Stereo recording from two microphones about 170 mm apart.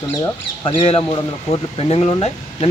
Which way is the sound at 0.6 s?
35° left (ahead or behind).